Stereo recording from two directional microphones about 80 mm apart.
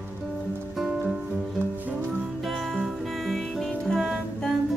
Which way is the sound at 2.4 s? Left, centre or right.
Centre.